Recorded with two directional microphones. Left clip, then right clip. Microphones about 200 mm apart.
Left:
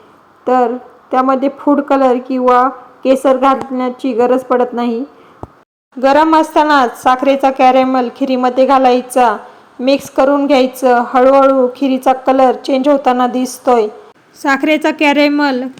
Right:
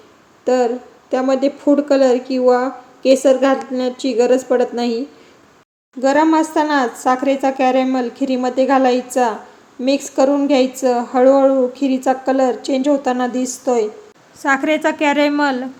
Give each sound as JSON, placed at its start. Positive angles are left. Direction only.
{"t": 0.4, "sound": "a woman's voice", "side_deg": 10}